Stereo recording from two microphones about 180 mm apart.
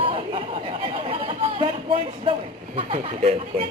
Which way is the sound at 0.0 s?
30° right (ahead or behind).